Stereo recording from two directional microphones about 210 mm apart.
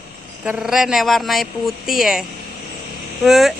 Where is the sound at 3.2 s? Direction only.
Centre (ahead or behind).